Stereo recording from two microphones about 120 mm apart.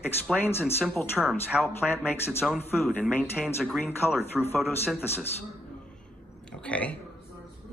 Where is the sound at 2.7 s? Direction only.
15° left (ahead or behind).